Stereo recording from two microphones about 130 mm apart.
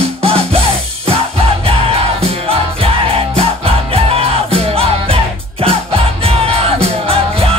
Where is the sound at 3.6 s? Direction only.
50° right (ahead or behind).